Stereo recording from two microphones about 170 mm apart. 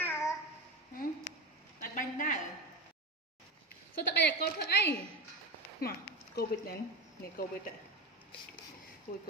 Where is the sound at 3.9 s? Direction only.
70° left (ahead or behind).